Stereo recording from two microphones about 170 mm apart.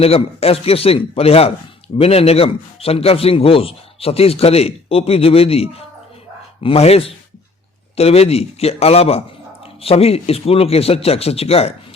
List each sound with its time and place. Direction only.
0.0 s a man's voice: 35° left (ahead or behind)